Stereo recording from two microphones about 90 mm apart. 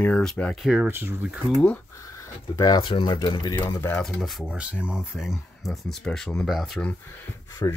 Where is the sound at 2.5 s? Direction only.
45° left (ahead or behind).